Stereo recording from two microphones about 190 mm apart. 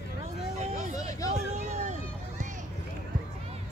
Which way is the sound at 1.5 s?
40° right (ahead or behind).